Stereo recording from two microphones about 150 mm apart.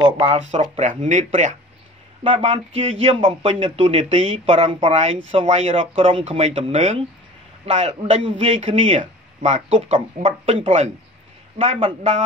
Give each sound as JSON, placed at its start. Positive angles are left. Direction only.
{"t": 0.0, "sound": "speech", "side_deg": -35}
{"t": 0.7, "sound": "speech", "side_deg": -55}
{"t": 2.3, "sound": "speech", "side_deg": -40}